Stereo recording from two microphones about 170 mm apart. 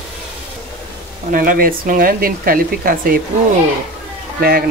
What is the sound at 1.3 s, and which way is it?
Speech, 55° right (ahead or behind).